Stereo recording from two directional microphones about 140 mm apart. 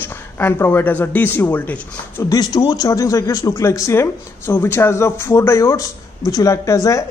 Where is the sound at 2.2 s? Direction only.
30° left (ahead or behind).